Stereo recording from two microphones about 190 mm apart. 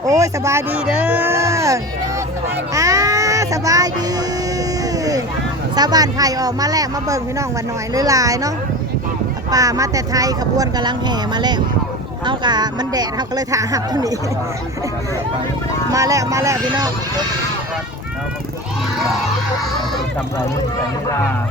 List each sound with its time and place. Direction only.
0.1 s speech: 15° right (ahead or behind)
2.7 s music: 15° right (ahead or behind)
5.7 s speech: 20° right (ahead or behind)
15.9 s speech: 15° right (ahead or behind)